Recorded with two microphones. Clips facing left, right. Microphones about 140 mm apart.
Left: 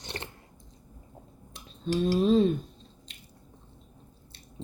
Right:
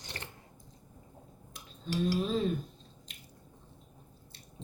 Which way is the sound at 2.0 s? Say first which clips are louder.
Left 8 dB; 25° left (ahead or behind).